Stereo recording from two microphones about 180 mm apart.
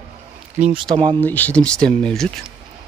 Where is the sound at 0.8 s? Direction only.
25° right (ahead or behind).